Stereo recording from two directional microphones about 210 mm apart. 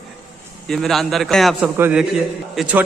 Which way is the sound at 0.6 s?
Centre (ahead or behind).